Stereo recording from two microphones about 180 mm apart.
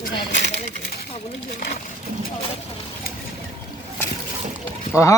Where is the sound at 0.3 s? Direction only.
80° left.